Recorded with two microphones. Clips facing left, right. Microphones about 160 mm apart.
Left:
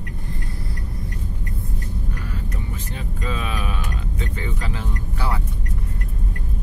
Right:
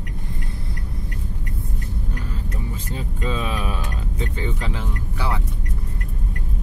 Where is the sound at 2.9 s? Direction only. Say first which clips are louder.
Right 3 dB; 30° right (ahead or behind).